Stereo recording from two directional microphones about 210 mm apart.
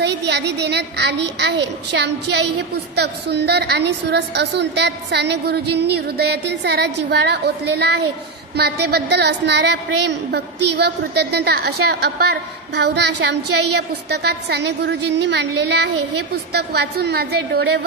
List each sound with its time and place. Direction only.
0.0 s a woman's voice: 55° right (ahead or behind)